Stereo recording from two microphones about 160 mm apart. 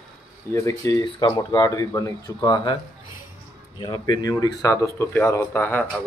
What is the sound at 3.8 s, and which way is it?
A man's voice, 25° left (ahead or behind).